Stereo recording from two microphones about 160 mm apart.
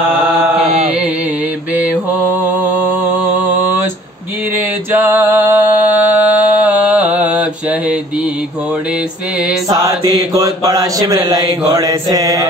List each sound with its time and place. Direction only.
1.8 s mantra: 10° right (ahead or behind)
4.9 s mantra: 10° right (ahead or behind)
10.3 s mantra: 20° right (ahead or behind)